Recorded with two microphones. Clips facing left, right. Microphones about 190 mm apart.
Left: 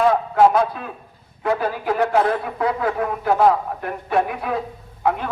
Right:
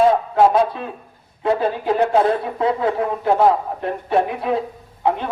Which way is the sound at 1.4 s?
25° right (ahead or behind).